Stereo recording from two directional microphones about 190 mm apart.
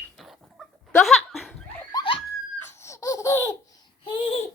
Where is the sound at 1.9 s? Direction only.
25° left (ahead or behind).